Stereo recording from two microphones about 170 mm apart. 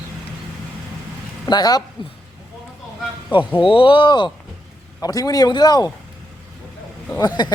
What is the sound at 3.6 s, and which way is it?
Speech, 30° left (ahead or behind).